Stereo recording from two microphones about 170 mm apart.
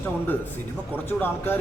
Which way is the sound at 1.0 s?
15° left (ahead or behind).